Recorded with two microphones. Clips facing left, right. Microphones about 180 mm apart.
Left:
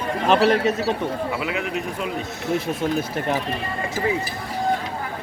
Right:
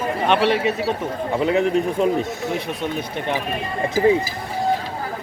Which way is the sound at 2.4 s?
Centre (ahead or behind).